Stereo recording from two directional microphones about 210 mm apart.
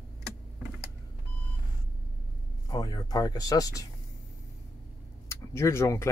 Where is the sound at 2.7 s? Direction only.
15° left (ahead or behind).